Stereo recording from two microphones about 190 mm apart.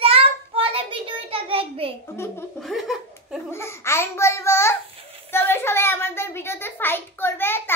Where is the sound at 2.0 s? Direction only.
15° left (ahead or behind).